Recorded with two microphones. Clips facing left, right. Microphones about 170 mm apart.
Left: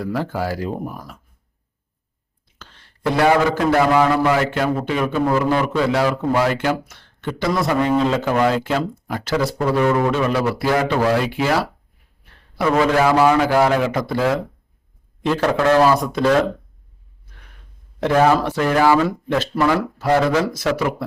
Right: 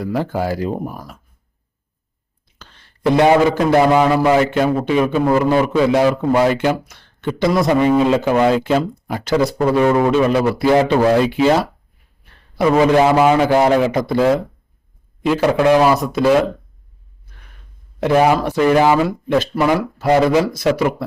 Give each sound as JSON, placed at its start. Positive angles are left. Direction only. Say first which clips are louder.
{"t": 0.0, "sound": "a man's voice", "louder": "right 3 dB", "side_deg": -20}
{"t": 2.6, "sound": "a sound", "louder": "even", "side_deg": -15}
{"t": 3.2, "sound": "a man's voice", "louder": "right 3 dB", "side_deg": -20}
{"t": 18.0, "sound": "speech", "louder": "right 2 dB", "side_deg": -10}